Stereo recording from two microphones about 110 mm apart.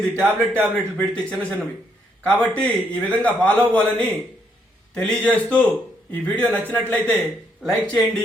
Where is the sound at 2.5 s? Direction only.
10° left (ahead or behind).